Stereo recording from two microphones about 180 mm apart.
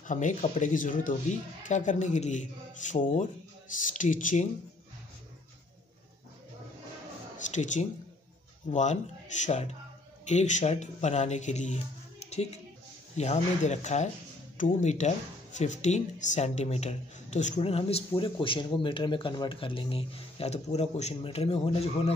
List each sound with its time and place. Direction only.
0.0 s speech: 45° left (ahead or behind)
7.3 s speech: 45° left (ahead or behind)